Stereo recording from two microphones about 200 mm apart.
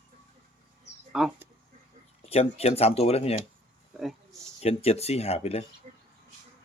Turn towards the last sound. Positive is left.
turn(degrees=-35)  # may be behind; listen again after turning